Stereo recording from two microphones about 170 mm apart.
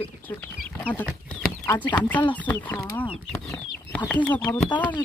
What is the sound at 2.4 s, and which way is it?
Speech, 10° left (ahead or behind).